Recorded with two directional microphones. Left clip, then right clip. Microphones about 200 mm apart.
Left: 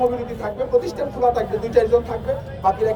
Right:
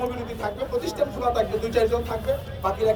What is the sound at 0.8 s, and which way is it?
Speech, 20° right (ahead or behind).